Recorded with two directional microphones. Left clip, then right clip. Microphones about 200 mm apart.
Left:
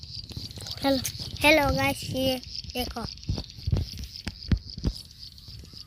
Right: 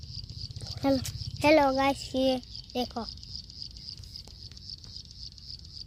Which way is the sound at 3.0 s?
25° right (ahead or behind).